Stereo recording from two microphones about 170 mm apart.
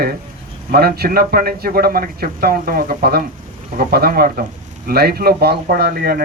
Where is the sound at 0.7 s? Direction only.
65° right (ahead or behind).